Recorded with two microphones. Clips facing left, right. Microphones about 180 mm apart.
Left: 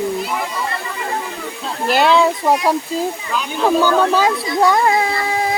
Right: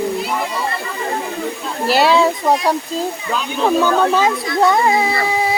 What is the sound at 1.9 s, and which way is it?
Speech, 5° right (ahead or behind).